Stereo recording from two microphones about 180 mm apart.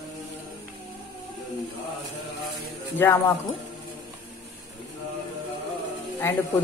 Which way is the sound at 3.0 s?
15° left (ahead or behind).